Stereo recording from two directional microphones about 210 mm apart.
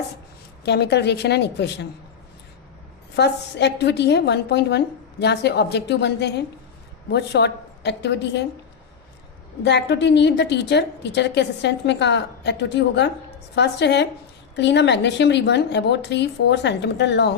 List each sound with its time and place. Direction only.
0.6 s a woman's voice: 50° left (ahead or behind)
3.2 s a woman's voice: 55° left (ahead or behind)
9.6 s a woman's voice: 55° left (ahead or behind)